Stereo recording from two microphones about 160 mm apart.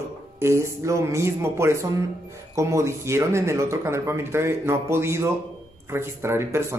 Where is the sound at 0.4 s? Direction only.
15° right (ahead or behind).